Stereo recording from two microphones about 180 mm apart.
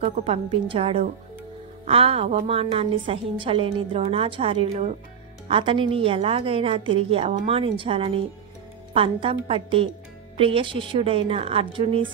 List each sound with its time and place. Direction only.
0.0 s a woman's voice: 35° right (ahead or behind)